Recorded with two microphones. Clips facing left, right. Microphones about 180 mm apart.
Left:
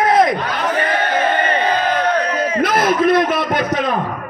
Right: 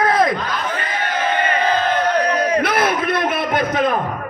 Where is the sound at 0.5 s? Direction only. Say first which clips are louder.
Left 5 dB; 60° left (ahead or behind).